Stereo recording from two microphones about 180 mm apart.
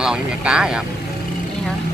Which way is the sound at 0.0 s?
5° right (ahead or behind).